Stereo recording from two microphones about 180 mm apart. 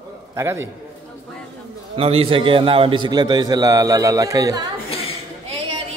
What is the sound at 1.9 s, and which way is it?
A man's voice, 35° right (ahead or behind).